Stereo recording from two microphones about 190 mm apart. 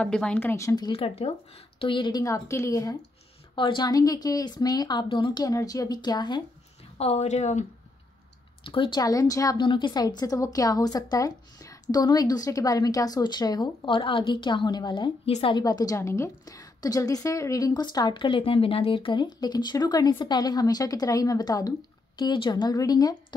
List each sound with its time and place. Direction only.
0.0 s a woman's voice: 5° left (ahead or behind); by 6.4 s 20° left (ahead or behind)
7.0 s a woman's voice: 35° left (ahead or behind)
8.6 s a woman's voice: 25° left (ahead or behind)